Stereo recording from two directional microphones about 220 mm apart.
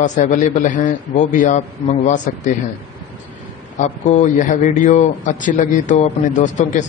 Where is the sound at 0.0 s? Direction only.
35° left (ahead or behind).